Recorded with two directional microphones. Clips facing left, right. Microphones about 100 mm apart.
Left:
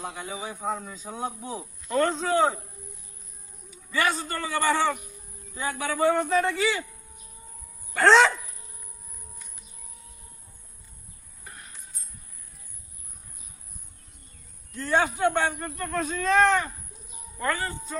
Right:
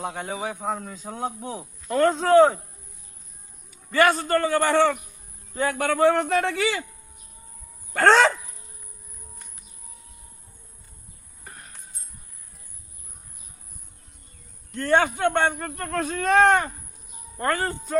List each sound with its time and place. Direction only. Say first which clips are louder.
0.0 s a man's voice: right 5 dB; 65° right (ahead or behind)
3.9 s a man's voice: right 7 dB; 55° right (ahead or behind); by 6.8 s 70° right (ahead or behind)
7.9 s speech: right 1 dB; 50° right (ahead or behind)
11.4 s a sound: right 1 dB; 40° right (ahead or behind)
14.7 s a man's voice: right 4 dB; 65° right (ahead or behind)